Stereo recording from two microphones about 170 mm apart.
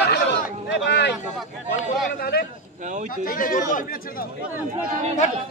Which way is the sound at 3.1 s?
55° left (ahead or behind).